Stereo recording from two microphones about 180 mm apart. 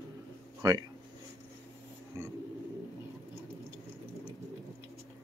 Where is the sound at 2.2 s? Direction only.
20° right (ahead or behind).